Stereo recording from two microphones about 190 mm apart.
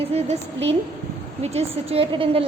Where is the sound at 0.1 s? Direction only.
30° right (ahead or behind).